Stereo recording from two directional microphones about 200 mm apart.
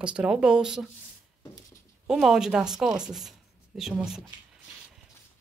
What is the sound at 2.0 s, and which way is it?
Speech, centre (ahead or behind).